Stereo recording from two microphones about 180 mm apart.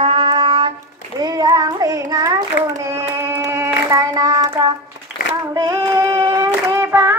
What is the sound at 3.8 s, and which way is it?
Child singing, 20° right (ahead or behind).